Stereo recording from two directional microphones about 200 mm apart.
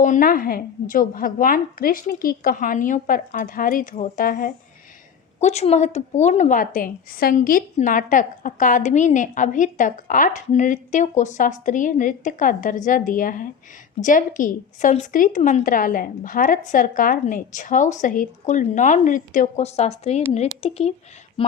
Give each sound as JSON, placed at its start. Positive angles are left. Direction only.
{"t": 0.0, "sound": "a woman's voice", "side_deg": 40}
{"t": 5.4, "sound": "a woman's voice", "side_deg": 35}